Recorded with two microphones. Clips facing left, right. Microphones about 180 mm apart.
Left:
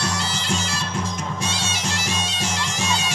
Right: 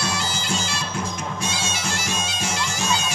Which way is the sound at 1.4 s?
35° left (ahead or behind).